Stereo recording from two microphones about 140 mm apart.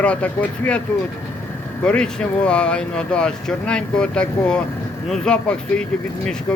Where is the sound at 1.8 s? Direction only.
5° left (ahead or behind).